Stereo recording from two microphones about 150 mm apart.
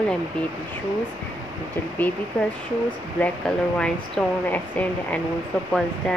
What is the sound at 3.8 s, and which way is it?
A woman's voice, 10° left (ahead or behind).